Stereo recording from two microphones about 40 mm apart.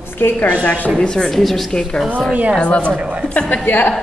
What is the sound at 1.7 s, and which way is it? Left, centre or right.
Speech, centre.